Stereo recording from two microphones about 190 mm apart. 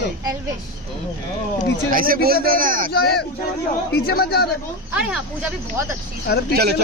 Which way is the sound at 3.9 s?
55° left (ahead or behind).